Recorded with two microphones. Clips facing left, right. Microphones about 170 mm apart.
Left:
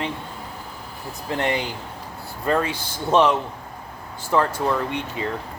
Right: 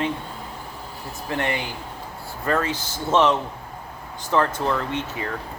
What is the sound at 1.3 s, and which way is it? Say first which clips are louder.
Speech: left 2 dB; 20° left (ahead or behind).